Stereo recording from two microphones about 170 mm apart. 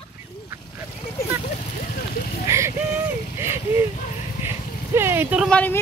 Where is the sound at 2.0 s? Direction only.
60° left (ahead or behind).